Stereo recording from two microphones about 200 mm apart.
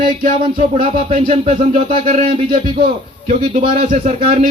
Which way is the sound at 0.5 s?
30° right (ahead or behind).